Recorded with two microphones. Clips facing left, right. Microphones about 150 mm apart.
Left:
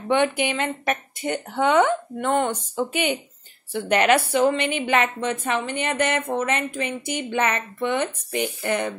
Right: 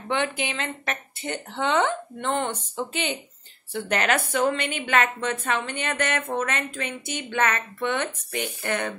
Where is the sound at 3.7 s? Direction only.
10° left (ahead or behind).